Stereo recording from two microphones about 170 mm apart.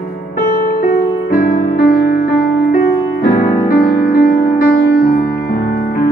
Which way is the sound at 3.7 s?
65° left (ahead or behind).